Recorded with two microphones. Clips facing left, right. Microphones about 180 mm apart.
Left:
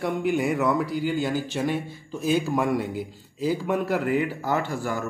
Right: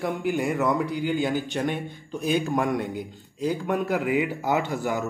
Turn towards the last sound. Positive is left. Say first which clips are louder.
# right 1 dB
turn(degrees=-20)  # may be behind; listen again after turning